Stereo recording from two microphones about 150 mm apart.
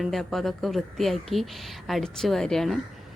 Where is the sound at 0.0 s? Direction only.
Centre (ahead or behind).